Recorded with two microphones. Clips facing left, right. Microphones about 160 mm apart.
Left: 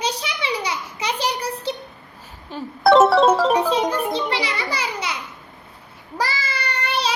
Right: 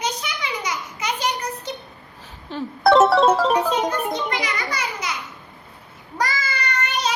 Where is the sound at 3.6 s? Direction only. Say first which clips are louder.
Left 1 dB; 30° left (ahead or behind).